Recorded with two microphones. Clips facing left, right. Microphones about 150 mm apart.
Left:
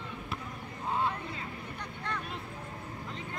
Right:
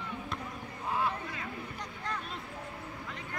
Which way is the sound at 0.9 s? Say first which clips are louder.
Even; 25° left (ahead or behind).